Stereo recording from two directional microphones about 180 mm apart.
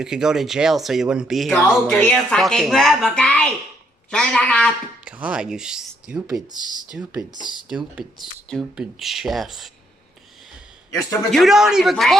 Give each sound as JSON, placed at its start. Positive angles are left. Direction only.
{"t": 0.0, "sound": "speech", "side_deg": -5}
{"t": 5.0, "sound": "speech", "side_deg": -5}
{"t": 6.6, "sound": "speech", "side_deg": 25}
{"t": 6.9, "sound": "speech", "side_deg": -5}
{"t": 11.3, "sound": "speech", "side_deg": 0}